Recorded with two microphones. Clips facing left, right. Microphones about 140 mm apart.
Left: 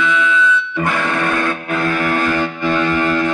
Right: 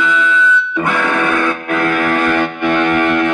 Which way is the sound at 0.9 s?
65° right (ahead or behind).